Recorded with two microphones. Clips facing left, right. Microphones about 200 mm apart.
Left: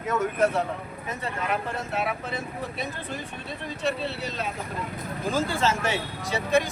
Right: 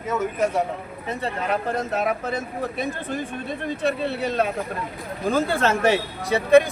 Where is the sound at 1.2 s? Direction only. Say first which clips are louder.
Right 4 dB; 35° right (ahead or behind).